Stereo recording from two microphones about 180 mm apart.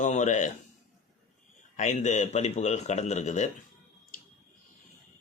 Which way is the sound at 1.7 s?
40° left (ahead or behind).